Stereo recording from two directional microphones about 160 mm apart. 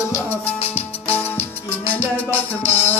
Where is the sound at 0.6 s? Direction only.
40° left (ahead or behind).